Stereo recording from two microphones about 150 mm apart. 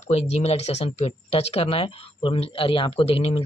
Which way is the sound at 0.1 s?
45° left (ahead or behind).